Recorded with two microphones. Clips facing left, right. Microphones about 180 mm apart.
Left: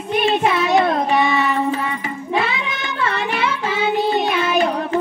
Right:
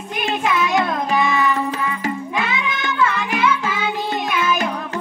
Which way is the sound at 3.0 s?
35° left (ahead or behind).